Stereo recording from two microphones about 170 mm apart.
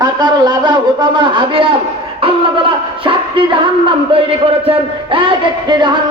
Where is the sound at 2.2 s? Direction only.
30° right (ahead or behind).